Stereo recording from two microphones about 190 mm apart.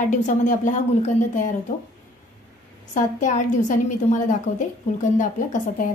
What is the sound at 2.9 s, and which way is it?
A woman's voice, 40° left (ahead or behind).